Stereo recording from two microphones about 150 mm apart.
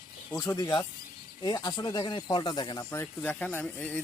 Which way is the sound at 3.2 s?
10° left (ahead or behind).